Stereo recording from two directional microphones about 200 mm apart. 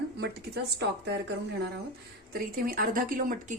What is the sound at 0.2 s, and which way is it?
Speech, 55° right (ahead or behind).